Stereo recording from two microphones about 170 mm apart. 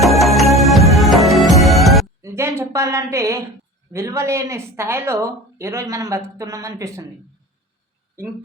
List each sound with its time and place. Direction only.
0.0 s music: centre (ahead or behind)
2.2 s a sound: 15° right (ahead or behind)
3.9 s speech: 15° right (ahead or behind)